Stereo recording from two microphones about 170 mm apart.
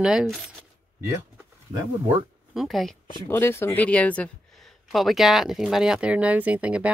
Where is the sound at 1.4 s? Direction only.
25° right (ahead or behind).